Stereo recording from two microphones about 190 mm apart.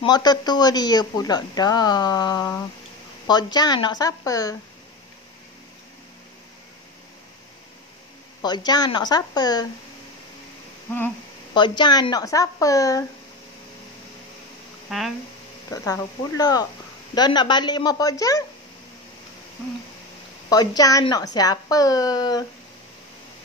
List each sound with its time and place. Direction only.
0.0 s speech: 20° left (ahead or behind)
8.4 s speech: 20° left (ahead or behind)
11.5 s speech: 25° left (ahead or behind)
14.9 s speech: centre (ahead or behind)
15.7 s speech: 15° left (ahead or behind)
20.4 s speech: 20° left (ahead or behind)